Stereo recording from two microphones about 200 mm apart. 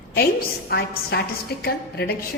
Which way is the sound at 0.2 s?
50° left (ahead or behind).